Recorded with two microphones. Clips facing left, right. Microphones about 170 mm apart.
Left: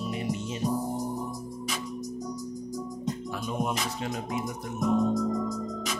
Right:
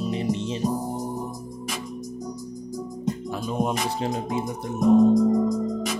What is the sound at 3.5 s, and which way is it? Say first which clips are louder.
Speech: right 5 dB; 30° right (ahead or behind).